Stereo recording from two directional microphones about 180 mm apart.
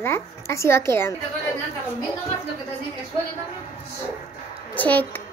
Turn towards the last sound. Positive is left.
turn(degrees=10)  # may be behind; listen again after turning